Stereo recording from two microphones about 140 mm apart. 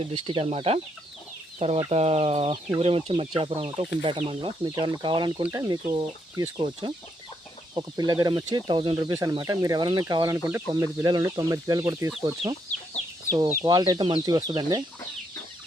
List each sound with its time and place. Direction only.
0.0 s speech: 40° right (ahead or behind)
1.5 s chicken: 50° right (ahead or behind)
1.9 s fowl: 50° right (ahead or behind)
3.1 s speech: 40° right (ahead or behind); by 12.1 s 25° right (ahead or behind)
13.5 s speech: 25° right (ahead or behind)